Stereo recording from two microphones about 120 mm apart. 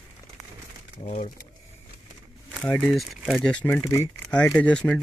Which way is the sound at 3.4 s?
10° left (ahead or behind).